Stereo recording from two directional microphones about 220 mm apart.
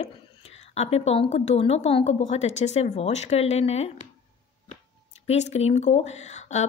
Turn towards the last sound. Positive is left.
turn(degrees=30)  # may be behind; listen again after turning